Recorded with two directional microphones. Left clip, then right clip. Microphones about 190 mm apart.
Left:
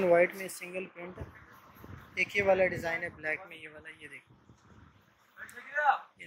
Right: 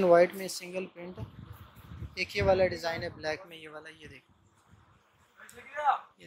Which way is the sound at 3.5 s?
20° right (ahead or behind).